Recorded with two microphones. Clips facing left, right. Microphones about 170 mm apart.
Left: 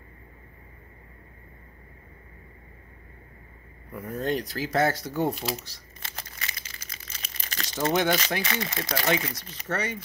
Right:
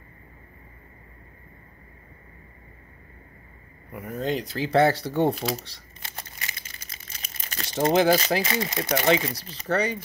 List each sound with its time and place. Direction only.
3.9 s speech: 20° right (ahead or behind)
5.3 s speech: centre (ahead or behind)
6.2 s speech: 30° right (ahead or behind)